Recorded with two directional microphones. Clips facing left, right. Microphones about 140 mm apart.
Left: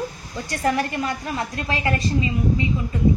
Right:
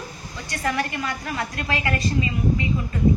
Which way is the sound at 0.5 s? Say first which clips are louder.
Left 3 dB; 35° left (ahead or behind).